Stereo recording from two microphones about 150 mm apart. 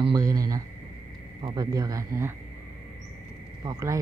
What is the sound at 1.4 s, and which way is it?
Speech, 30° right (ahead or behind).